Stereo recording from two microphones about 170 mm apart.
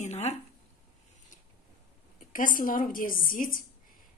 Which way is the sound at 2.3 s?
55° left (ahead or behind).